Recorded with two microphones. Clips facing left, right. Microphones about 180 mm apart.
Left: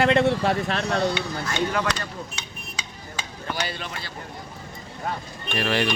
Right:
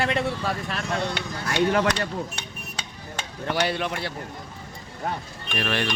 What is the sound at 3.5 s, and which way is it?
Speech, 65° right (ahead or behind).